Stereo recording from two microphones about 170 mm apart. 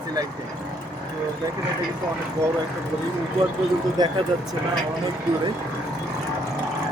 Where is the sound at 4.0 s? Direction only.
25° right (ahead or behind).